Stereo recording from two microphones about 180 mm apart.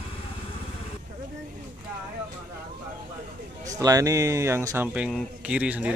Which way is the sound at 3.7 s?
20° right (ahead or behind).